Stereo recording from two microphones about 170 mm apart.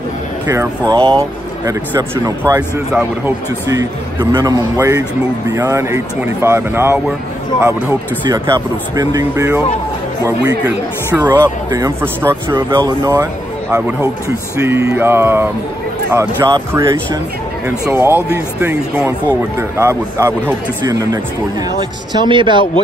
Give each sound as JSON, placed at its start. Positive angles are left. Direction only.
{"t": 0.5, "sound": "a man's voice", "side_deg": -20}
{"t": 12.7, "sound": "a man's voice", "side_deg": -25}
{"t": 17.6, "sound": "a man's voice", "side_deg": -15}